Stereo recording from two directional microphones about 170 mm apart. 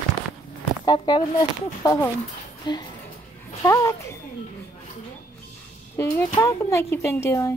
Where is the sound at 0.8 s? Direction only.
25° left (ahead or behind).